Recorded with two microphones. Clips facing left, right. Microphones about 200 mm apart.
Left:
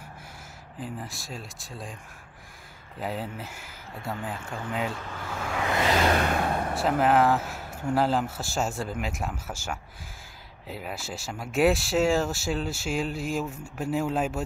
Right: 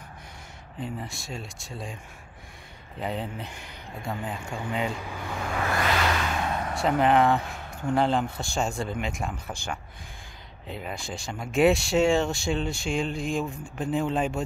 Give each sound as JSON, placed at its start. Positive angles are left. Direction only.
{"t": 0.7, "sound": "speech", "side_deg": 0}
{"t": 3.0, "sound": "speech", "side_deg": 5}
{"t": 4.9, "sound": "speech", "side_deg": -10}
{"t": 5.2, "sound": "vehicle", "side_deg": 0}
{"t": 5.7, "sound": "vehicle", "side_deg": 20}
{"t": 6.0, "sound": "vehicle", "side_deg": 45}
{"t": 6.7, "sound": "a man's voice", "side_deg": 5}